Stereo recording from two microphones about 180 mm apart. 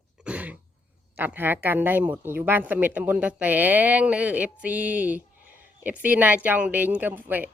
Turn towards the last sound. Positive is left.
turn(degrees=-10)  # may be behind; listen again after turning